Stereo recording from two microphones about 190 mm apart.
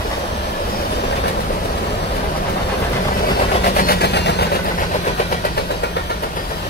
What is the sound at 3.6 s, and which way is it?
Vehicle, 50° left (ahead or behind).